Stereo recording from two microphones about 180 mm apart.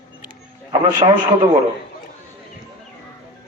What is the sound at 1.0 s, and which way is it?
Speech, 35° right (ahead or behind).